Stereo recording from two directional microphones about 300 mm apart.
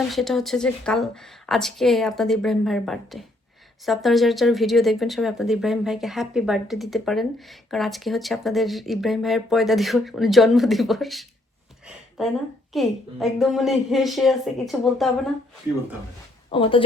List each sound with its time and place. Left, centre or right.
0.1 s speech: centre
11.9 s a sound: centre
12.7 s speech: centre
16.5 s speech: centre